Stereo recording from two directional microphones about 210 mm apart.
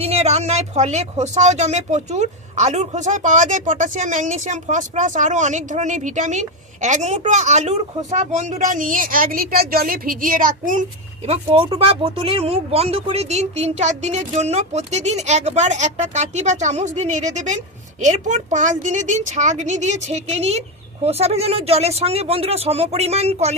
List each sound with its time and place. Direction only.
0.0 s speech: 30° right (ahead or behind)
11.3 s speech: 25° right (ahead or behind)